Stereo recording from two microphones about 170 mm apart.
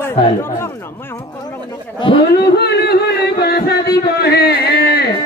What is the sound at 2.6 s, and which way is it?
Music, 70° left (ahead or behind).